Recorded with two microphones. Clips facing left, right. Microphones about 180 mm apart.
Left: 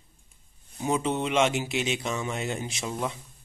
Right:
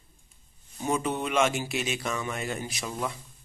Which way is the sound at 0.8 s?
20° left (ahead or behind).